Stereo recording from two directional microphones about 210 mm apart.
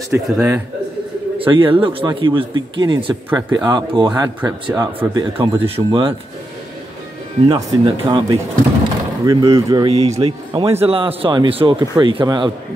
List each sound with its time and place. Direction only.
0.1 s speech: 10° right (ahead or behind)
1.4 s speech: 25° right (ahead or behind)
7.4 s speech: 20° right (ahead or behind)
9.8 s speech: 30° right (ahead or behind)